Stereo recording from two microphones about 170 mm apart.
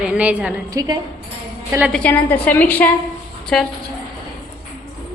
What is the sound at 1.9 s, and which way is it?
A woman's voice, 5° left (ahead or behind).